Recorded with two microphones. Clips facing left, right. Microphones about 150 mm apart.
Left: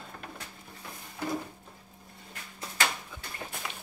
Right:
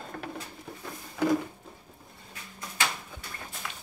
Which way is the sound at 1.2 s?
90° right.